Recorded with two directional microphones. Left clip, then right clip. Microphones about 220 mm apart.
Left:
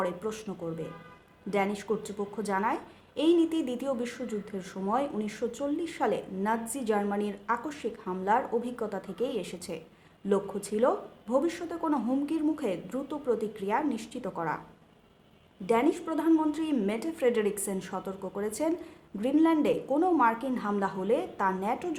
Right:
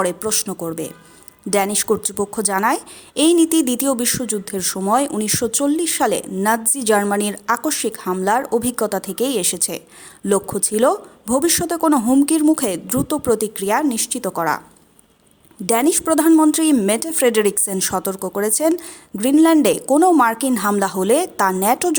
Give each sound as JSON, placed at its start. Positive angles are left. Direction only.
{"t": 0.0, "sound": "a woman's voice", "side_deg": -45}
{"t": 15.6, "sound": "a woman's voice", "side_deg": -45}